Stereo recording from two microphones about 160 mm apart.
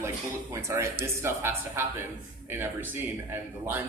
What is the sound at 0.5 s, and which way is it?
Speech, 20° right (ahead or behind).